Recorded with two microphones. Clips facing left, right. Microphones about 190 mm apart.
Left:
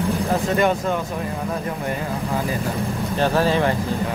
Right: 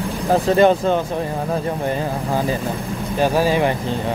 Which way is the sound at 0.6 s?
30° right (ahead or behind).